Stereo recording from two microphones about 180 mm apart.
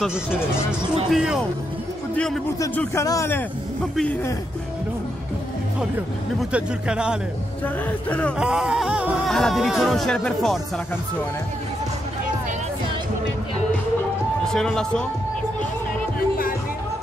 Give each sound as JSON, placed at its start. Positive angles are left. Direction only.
{"t": 1.1, "sound": "music", "side_deg": -5}
{"t": 2.1, "sound": "a man's voice", "side_deg": 5}
{"t": 6.5, "sound": "music", "side_deg": -5}
{"t": 7.6, "sound": "speech", "side_deg": 5}
{"t": 8.4, "sound": "music", "side_deg": -5}
{"t": 14.5, "sound": "music", "side_deg": 5}
{"t": 16.2, "sound": "music", "side_deg": 55}